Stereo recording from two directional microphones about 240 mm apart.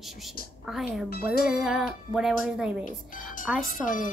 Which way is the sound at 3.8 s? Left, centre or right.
Left.